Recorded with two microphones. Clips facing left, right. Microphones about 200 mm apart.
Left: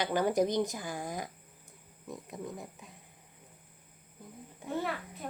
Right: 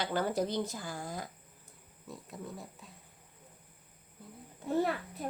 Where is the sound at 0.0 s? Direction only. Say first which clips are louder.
Left 4 dB; 15° left (ahead or behind).